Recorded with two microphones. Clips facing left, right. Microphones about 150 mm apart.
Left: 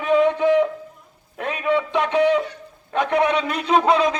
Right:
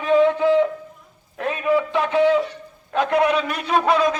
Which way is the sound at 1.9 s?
20° left (ahead or behind).